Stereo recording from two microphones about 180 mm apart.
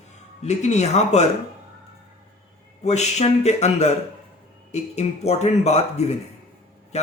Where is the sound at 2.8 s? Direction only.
40° left (ahead or behind).